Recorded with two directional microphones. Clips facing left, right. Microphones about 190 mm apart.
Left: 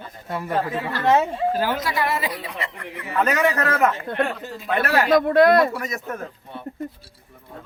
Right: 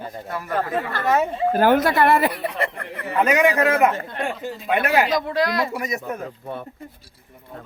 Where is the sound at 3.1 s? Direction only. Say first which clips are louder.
Right 3 dB; 15° right (ahead or behind).